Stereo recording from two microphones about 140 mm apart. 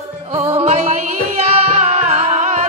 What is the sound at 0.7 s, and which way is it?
Music, 50° right (ahead or behind).